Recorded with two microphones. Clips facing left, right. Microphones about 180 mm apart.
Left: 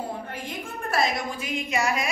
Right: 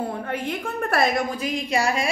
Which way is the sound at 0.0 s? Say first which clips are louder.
Right 6 dB; 60° right (ahead or behind).